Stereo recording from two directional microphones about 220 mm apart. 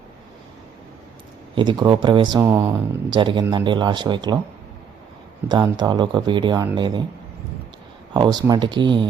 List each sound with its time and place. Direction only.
1.5 s speech: 20° right (ahead or behind)
5.5 s speech: 20° right (ahead or behind)
8.1 s speech: 20° right (ahead or behind)